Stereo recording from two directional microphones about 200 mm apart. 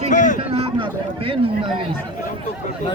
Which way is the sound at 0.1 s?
40° left (ahead or behind).